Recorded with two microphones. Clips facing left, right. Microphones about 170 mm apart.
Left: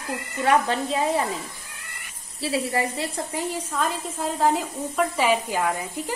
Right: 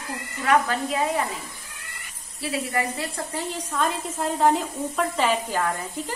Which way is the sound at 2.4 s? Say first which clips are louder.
Left 2 dB; 30° left (ahead or behind).